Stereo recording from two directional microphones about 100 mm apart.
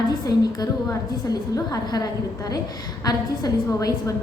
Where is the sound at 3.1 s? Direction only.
40° left (ahead or behind).